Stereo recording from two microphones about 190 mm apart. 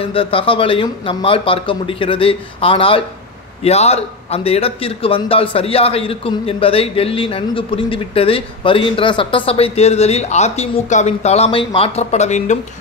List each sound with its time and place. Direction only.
0.0 s a man's voice: 30° left (ahead or behind)